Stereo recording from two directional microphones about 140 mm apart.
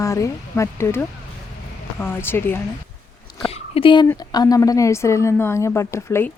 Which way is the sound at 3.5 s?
40° left (ahead or behind).